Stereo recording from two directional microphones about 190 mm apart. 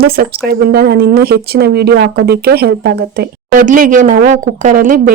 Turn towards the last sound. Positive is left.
turn(degrees=-45)  # may be behind; listen again after turning